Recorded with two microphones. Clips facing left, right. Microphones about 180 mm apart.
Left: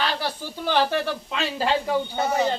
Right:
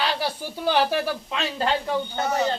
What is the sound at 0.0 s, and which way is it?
Speech, 15° right (ahead or behind).